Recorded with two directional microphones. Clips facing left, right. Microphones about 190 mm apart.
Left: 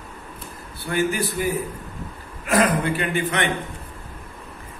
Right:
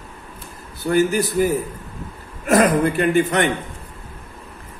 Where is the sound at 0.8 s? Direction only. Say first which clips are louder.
Right 5 dB; 40° right (ahead or behind).